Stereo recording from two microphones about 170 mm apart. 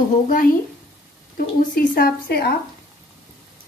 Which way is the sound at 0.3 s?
55° left (ahead or behind).